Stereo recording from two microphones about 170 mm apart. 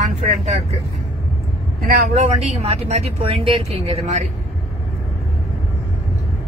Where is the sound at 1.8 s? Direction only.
40° right (ahead or behind).